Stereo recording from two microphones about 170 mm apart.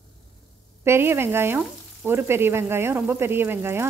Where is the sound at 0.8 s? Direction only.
15° right (ahead or behind).